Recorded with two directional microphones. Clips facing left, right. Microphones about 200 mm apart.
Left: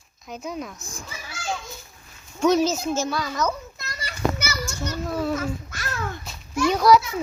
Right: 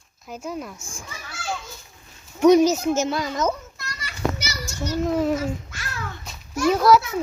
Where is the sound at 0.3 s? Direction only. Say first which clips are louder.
Right 1 dB; 5° right (ahead or behind).